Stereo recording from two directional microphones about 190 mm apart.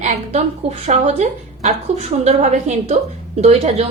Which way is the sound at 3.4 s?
35° right (ahead or behind).